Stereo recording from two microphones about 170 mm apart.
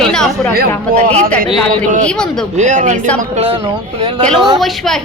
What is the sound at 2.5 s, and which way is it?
Speech, 45° right (ahead or behind).